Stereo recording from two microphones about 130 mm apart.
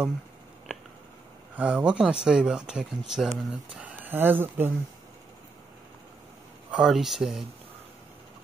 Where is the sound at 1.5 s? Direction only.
10° right (ahead or behind).